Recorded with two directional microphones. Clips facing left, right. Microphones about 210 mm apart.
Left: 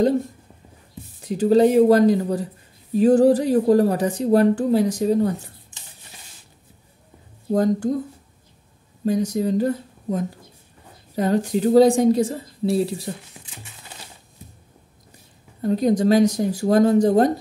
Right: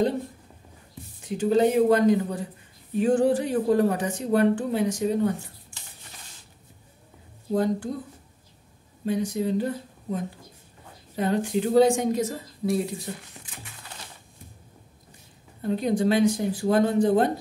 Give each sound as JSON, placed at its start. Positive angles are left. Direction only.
{"t": 1.2, "sound": "a woman's voice", "side_deg": 35}
{"t": 5.7, "sound": "a sound", "side_deg": 20}
{"t": 7.5, "sound": "speech", "side_deg": 45}
{"t": 9.0, "sound": "a woman's voice", "side_deg": 40}
{"t": 11.1, "sound": "a woman's voice", "side_deg": 40}
{"t": 15.6, "sound": "a woman's voice", "side_deg": 40}